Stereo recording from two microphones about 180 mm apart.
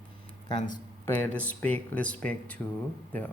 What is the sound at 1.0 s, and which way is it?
Speech, 10° left (ahead or behind).